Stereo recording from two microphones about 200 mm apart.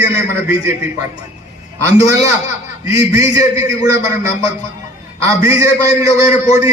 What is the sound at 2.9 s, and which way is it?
Speech, 15° right (ahead or behind).